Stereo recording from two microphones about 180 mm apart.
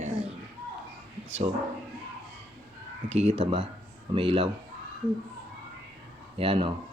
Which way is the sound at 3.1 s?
35° right (ahead or behind).